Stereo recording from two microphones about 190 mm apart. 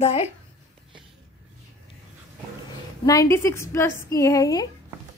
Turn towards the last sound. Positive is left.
turn(degrees=20)  # may be behind; listen again after turning